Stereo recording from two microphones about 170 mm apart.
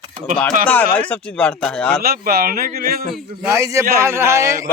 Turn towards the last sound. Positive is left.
turn(degrees=-20)  # may be behind; listen again after turning